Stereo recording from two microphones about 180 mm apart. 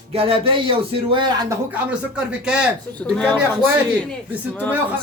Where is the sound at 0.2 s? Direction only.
30° right (ahead or behind).